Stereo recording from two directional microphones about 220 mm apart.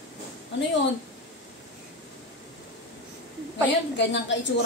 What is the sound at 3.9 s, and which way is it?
Speech, 55° left (ahead or behind).